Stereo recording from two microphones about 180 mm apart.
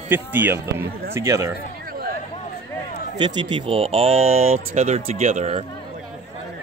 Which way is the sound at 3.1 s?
25° right (ahead or behind).